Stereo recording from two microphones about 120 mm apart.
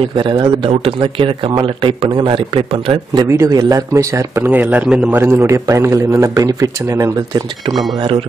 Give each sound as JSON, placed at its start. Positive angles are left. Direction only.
{"t": 0.2, "sound": "speech", "side_deg": -40}
{"t": 3.3, "sound": "a man's voice", "side_deg": -30}
{"t": 4.5, "sound": "a man's voice", "side_deg": -15}